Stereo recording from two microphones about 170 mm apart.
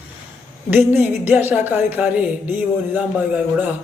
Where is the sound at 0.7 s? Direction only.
10° right (ahead or behind).